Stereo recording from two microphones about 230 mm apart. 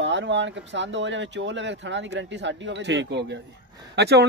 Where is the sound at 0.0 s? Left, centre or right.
Right.